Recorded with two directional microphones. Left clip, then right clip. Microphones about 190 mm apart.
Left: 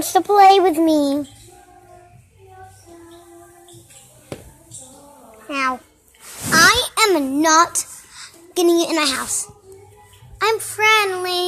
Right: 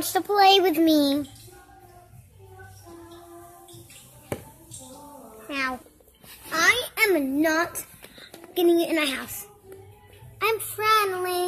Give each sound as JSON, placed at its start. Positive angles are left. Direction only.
{"t": 0.0, "sound": "a child's voice", "side_deg": 20}
{"t": 5.5, "sound": "a child's voice", "side_deg": 10}
{"t": 6.5, "sound": "a sound", "side_deg": 5}
{"t": 8.5, "sound": "a child's voice", "side_deg": 10}